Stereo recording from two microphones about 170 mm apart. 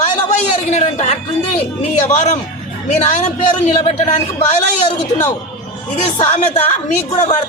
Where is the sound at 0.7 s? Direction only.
40° left (ahead or behind).